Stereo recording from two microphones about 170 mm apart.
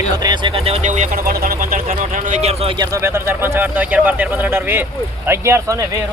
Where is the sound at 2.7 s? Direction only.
20° right (ahead or behind).